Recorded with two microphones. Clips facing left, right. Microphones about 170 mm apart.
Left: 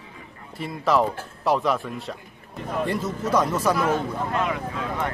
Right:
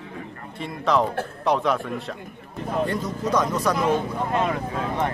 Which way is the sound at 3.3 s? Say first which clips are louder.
Left 1 dB; 5° left (ahead or behind).